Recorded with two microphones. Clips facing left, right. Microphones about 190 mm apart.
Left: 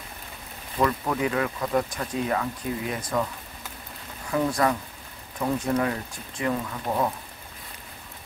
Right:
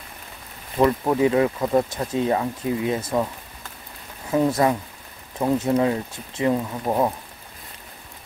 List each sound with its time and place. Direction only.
0.7 s speech: 25° right (ahead or behind)
4.3 s speech: 25° right (ahead or behind)